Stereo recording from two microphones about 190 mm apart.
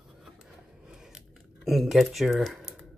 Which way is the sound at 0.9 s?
5° right (ahead or behind).